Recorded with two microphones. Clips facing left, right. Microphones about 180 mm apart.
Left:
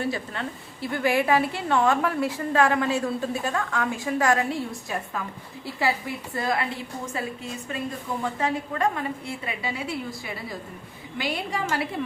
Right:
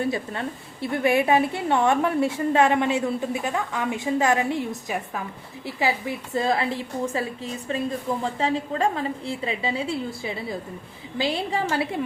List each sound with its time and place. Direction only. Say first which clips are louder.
0.0 s a woman's voice: right 3 dB; 25° right (ahead or behind)